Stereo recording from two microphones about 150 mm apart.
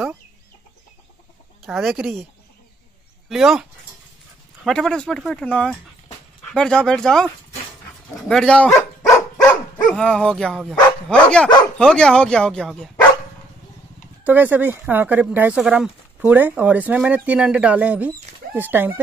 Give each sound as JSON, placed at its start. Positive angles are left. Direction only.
{"t": 1.7, "sound": "speech", "side_deg": 0}
{"t": 3.3, "sound": "speech", "side_deg": -5}
{"t": 4.6, "sound": "speech", "side_deg": 5}
{"t": 9.8, "sound": "speech", "side_deg": 5}
{"t": 14.2, "sound": "speech", "side_deg": -10}